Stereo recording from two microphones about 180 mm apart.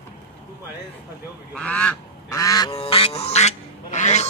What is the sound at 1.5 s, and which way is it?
Goose, 5° left (ahead or behind).